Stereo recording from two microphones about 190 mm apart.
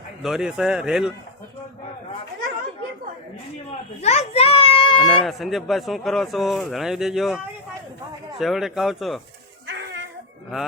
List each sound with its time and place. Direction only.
0.2 s speech: centre (ahead or behind)
4.0 s a child's voice: 35° left (ahead or behind)
5.0 s speech: centre (ahead or behind)